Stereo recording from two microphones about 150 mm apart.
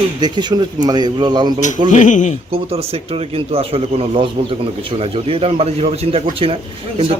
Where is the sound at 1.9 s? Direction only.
55° left (ahead or behind).